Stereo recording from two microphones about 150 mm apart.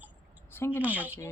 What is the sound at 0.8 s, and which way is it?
Speech, 10° right (ahead or behind).